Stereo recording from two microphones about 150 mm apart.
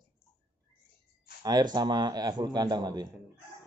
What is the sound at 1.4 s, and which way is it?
Speech, 25° right (ahead or behind).